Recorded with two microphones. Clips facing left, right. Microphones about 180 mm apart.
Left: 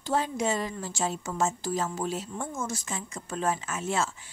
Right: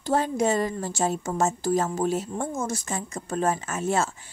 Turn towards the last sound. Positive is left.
turn(degrees=-45)  # may be behind; listen again after turning